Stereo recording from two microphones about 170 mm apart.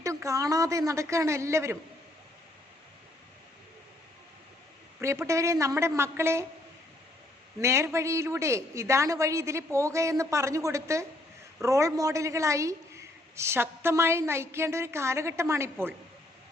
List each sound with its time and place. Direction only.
0.0 s a woman's voice: 20° right (ahead or behind)
4.9 s a woman's voice: 15° right (ahead or behind)
7.6 s a woman's voice: 15° right (ahead or behind)